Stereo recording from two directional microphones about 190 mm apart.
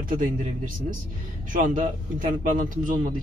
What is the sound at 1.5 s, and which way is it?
Speech, 45° right (ahead or behind).